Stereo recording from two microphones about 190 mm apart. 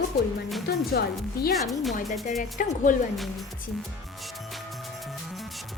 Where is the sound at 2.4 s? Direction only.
45° left (ahead or behind).